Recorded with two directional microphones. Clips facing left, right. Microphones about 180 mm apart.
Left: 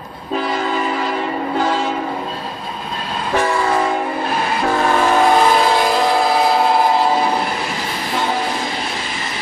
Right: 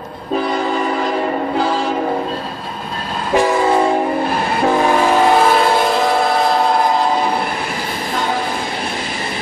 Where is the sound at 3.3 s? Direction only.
15° right (ahead or behind).